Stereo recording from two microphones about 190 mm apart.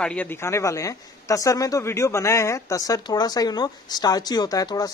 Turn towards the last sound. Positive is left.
turn(degrees=20)  # may be behind; listen again after turning